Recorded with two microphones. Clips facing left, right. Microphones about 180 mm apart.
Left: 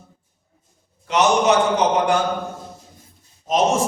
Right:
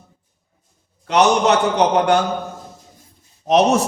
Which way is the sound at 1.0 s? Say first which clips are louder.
Right 2 dB; 65° right (ahead or behind).